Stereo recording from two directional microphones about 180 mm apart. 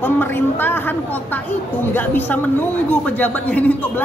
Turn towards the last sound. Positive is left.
turn(degrees=10)  # may be behind; listen again after turning